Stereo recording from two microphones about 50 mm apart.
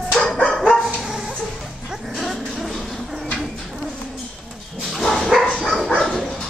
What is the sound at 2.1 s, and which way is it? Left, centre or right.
Music, centre.